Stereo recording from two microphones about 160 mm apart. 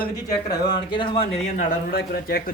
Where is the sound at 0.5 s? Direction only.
25° left (ahead or behind); by 1.6 s 40° left (ahead or behind).